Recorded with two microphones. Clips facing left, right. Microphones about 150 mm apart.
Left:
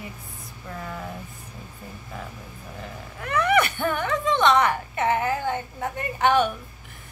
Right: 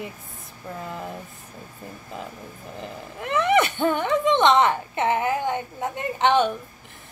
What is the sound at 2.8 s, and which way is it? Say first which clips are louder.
Speech: right 3 dB; 20° right (ahead or behind).